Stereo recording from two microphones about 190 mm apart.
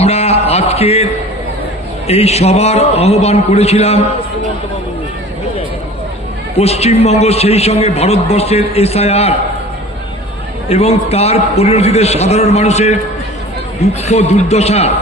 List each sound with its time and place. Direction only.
0.0 s a sound: 35° left (ahead or behind)
2.0 s a man's voice: 35° left (ahead or behind)
6.6 s a man's voice: 35° left (ahead or behind)
10.7 s a man's voice: 35° left (ahead or behind)
14.0 s a man's voice: 35° left (ahead or behind)